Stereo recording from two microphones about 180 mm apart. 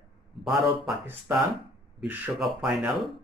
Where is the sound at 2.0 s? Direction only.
5° right (ahead or behind).